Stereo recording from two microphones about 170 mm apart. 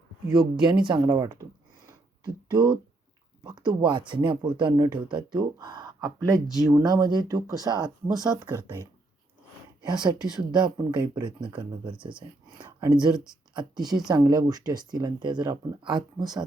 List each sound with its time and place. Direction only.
0.3 s speech: 25° right (ahead or behind)
1.9 s a sound: 25° right (ahead or behind)
3.4 s speech: 25° right (ahead or behind)
9.8 s speech: 25° right (ahead or behind)
10.2 s speech: 5° right (ahead or behind)
10.5 s speech: 25° right (ahead or behind)
13.5 s speech: 25° right (ahead or behind)